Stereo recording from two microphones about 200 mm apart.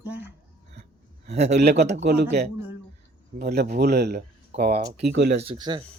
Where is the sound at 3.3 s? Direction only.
50° right (ahead or behind).